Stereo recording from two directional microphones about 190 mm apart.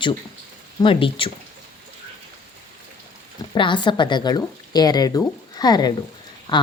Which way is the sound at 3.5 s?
25° left (ahead or behind).